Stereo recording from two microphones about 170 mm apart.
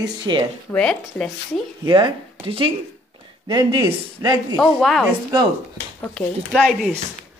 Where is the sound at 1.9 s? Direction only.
30° right (ahead or behind).